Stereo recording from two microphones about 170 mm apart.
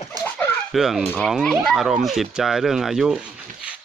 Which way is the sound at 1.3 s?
Centre (ahead or behind).